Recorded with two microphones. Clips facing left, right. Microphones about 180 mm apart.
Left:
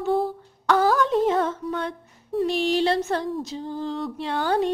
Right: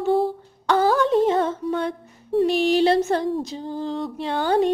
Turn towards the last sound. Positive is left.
turn(degrees=0)  # may be behind; listen again after turning